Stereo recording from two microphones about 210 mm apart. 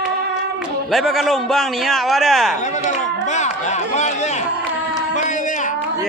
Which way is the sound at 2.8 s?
35° left (ahead or behind).